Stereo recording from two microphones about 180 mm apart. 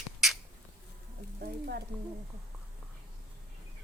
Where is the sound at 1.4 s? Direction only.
60° right (ahead or behind).